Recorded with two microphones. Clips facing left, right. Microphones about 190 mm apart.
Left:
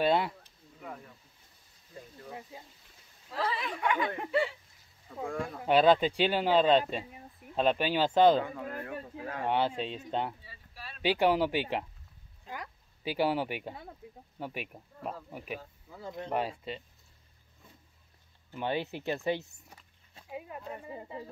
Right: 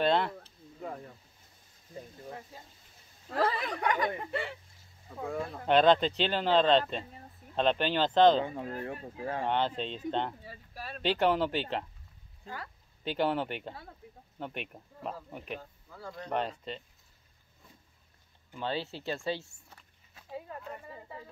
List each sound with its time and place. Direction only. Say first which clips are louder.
0.0 s speech: even; 10° left (ahead or behind)
0.7 s speech: right 4 dB; 35° right (ahead or behind)
3.3 s speech: right 4 dB; 50° right (ahead or behind)
4.3 s speech: left 6 dB; 55° right (ahead or behind)
5.2 s speech: even; 5° right (ahead or behind)
5.6 s speech: even; 5° left (ahead or behind)
8.4 s speech: right 1 dB; 25° right (ahead or behind)
9.5 s speech: left 3 dB; 10° left (ahead or behind)
10.4 s a sound: right 5 dB; 45° right (ahead or behind)
11.0 s speech: left 1 dB; 10° left (ahead or behind)
16.0 s speech: left 3 dB; 20° left (ahead or behind)
16.3 s speech: even; 5° left (ahead or behind)
18.6 s speech: left 2 dB; 15° left (ahead or behind)